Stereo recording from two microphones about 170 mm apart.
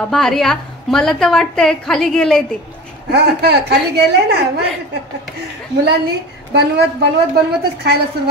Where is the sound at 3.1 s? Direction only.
75° right (ahead or behind).